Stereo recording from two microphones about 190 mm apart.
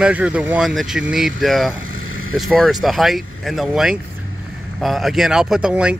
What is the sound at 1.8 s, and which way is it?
Vehicle, 90° right.